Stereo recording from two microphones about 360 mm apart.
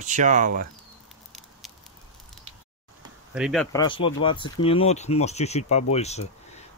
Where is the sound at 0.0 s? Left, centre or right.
Right.